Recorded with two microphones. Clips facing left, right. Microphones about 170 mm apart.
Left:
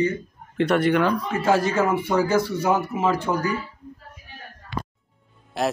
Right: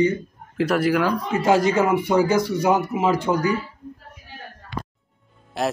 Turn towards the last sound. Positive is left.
turn(degrees=0)  # may be behind; listen again after turning